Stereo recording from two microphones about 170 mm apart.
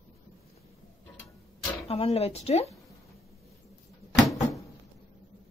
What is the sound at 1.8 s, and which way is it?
Speech, 35° left (ahead or behind).